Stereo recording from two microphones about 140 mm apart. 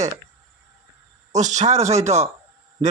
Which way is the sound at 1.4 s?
55° right (ahead or behind).